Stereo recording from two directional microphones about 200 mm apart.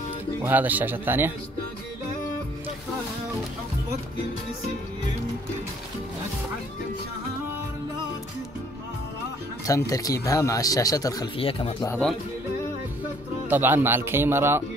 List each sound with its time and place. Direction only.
0.4 s speech: 10° right (ahead or behind)
9.7 s speech: 15° left (ahead or behind)
13.5 s speech: 10° right (ahead or behind)